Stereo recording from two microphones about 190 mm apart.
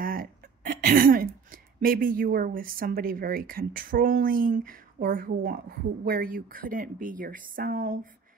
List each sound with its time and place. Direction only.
0.0 s speech: 50° right (ahead or behind)